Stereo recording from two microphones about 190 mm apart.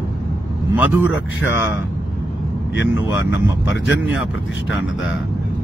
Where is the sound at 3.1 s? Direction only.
10° right (ahead or behind).